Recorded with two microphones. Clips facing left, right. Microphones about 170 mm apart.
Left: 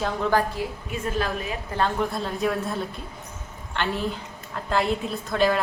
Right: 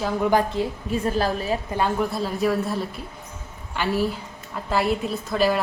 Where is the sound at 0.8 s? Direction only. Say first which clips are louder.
Right 4 dB; 35° right (ahead or behind).